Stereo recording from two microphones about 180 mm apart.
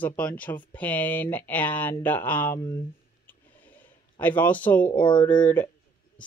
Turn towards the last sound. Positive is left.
turn(degrees=10)  # may be behind; listen again after turning